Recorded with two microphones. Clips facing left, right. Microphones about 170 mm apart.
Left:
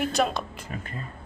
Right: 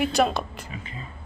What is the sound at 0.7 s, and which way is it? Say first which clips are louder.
Speech: left 2 dB; 50° left (ahead or behind).